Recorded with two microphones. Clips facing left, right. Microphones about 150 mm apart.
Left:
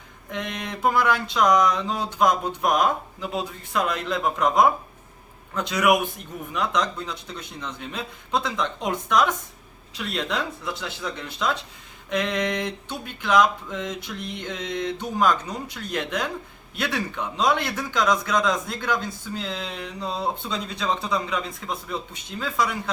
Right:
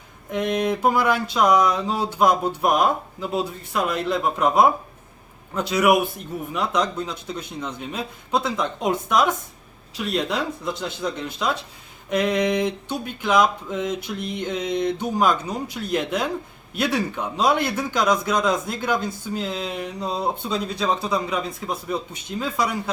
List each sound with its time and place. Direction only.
0.3 s speech: 10° right (ahead or behind)
5.7 s speech: 5° right (ahead or behind)